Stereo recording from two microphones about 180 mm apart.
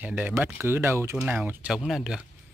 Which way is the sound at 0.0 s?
10° right (ahead or behind).